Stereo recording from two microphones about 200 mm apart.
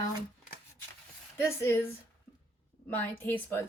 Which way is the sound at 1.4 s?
15° left (ahead or behind).